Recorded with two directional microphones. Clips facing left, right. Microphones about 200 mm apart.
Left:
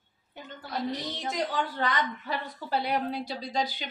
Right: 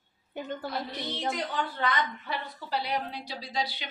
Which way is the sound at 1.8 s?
40° left (ahead or behind).